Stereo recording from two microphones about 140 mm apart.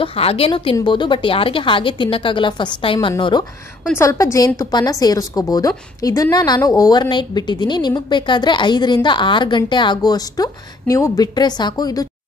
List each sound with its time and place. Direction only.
0.0 s a woman's voice: 45° left (ahead or behind)
0.5 s a woman's voice: 30° left (ahead or behind)
4.0 s a woman's voice: 20° left (ahead or behind)